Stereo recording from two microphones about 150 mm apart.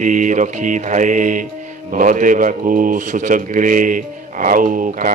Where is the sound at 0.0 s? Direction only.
55° right (ahead or behind).